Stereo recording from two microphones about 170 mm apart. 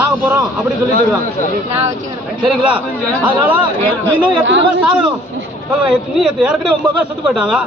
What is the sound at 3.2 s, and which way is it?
Speech, 10° right (ahead or behind).